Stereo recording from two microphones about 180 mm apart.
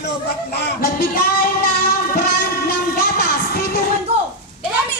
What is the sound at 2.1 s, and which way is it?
Music, 55° left (ahead or behind).